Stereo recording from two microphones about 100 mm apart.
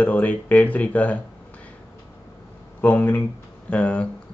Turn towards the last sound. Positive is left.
turn(degrees=10)  # may be behind; listen again after turning